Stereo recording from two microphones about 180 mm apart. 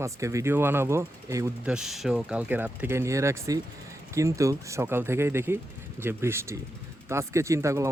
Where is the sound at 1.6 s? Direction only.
5° right (ahead or behind).